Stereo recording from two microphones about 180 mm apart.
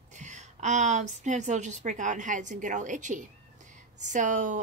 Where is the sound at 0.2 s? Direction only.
40° right (ahead or behind).